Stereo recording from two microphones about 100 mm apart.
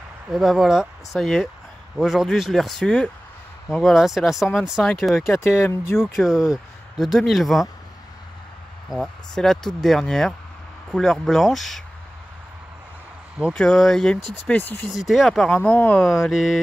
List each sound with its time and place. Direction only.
0.3 s speech: centre (ahead or behind)
5.5 s speech: 25° left (ahead or behind)
6.1 s speech: 5° right (ahead or behind)
8.8 s speech: centre (ahead or behind)
13.5 s speech: 5° left (ahead or behind)
14.9 s speech: 5° right (ahead or behind)
15.5 s speech: 15° left (ahead or behind)
16.3 s speech: centre (ahead or behind)